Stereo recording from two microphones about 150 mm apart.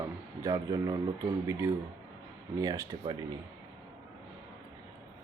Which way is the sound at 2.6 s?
25° right (ahead or behind).